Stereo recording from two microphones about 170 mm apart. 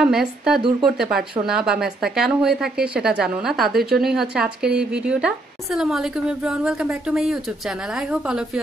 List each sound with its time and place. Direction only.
0.0 s a woman's voice: 5° right (ahead or behind)
0.6 s speech: 30° right (ahead or behind)
0.8 s a woman's voice: 5° right (ahead or behind)